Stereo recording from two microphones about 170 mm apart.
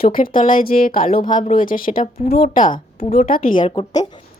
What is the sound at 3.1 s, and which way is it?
Speech, 55° left (ahead or behind).